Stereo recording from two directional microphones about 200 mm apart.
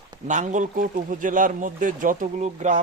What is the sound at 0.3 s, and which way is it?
A man's voice, 40° right (ahead or behind).